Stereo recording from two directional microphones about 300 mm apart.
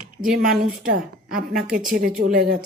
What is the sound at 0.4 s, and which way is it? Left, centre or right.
Speech, centre.